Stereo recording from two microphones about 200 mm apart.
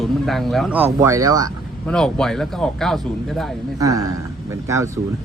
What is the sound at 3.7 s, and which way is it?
Speech, 15° right (ahead or behind).